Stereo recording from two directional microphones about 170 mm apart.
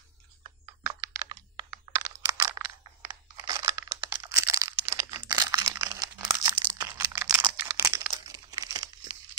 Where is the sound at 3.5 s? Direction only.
20° right (ahead or behind).